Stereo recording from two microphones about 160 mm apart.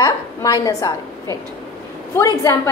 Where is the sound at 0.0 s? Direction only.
20° left (ahead or behind).